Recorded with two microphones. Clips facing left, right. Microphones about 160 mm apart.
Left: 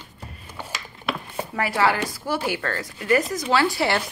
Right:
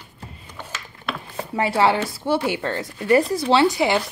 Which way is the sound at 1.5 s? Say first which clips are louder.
Right 3 dB; 25° right (ahead or behind).